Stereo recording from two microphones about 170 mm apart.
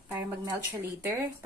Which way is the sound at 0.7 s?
15° right (ahead or behind).